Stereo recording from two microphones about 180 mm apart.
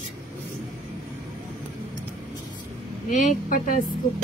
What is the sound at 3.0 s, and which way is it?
Speech, 45° left (ahead or behind).